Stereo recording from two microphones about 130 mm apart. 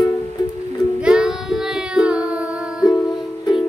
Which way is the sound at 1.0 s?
5° right (ahead or behind).